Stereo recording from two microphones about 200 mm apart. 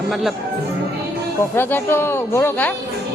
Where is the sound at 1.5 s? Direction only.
10° left (ahead or behind).